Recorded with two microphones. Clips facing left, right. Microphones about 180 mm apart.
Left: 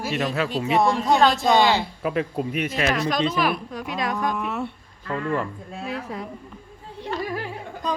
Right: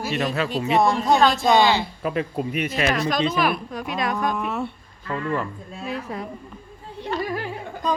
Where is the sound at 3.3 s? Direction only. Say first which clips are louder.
Right 1 dB; 55° right (ahead or behind).